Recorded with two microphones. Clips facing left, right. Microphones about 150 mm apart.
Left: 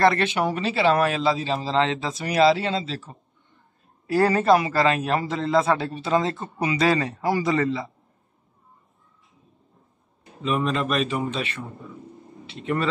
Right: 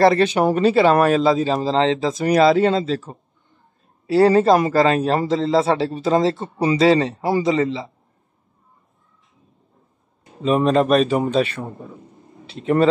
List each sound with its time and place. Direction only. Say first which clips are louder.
0.0 s speech: right 5 dB; 35° right (ahead or behind)
4.1 s speech: right 5 dB; 30° right (ahead or behind)
10.4 s speech: right 8 dB; 40° right (ahead or behind)